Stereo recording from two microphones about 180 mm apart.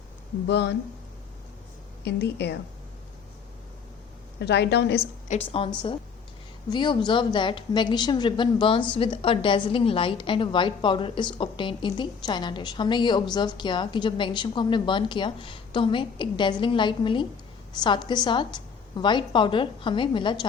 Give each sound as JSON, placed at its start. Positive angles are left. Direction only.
{"t": 0.4, "sound": "a woman's voice", "side_deg": 70}
{"t": 2.0, "sound": "a woman's voice", "side_deg": 70}
{"t": 4.4, "sound": "a woman's voice", "side_deg": 70}
{"t": 5.3, "sound": "a woman's voice", "side_deg": 30}